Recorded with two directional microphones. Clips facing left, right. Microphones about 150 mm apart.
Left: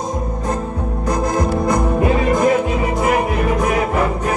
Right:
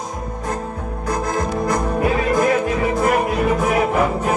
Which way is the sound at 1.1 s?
20° left (ahead or behind).